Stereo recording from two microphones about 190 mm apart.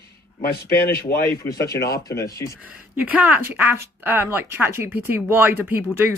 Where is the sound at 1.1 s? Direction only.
15° left (ahead or behind).